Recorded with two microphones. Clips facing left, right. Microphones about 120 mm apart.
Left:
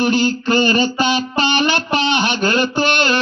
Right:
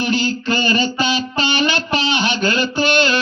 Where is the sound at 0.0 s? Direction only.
50° left (ahead or behind).